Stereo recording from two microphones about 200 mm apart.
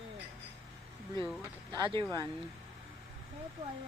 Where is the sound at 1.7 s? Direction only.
25° right (ahead or behind).